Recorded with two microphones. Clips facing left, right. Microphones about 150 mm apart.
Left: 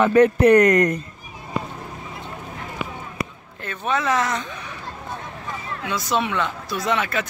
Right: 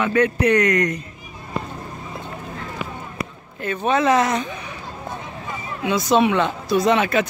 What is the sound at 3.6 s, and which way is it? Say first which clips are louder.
Speech: right 5 dB; 20° right (ahead or behind).